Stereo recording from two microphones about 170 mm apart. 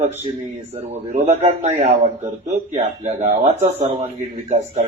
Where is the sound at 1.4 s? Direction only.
40° right (ahead or behind).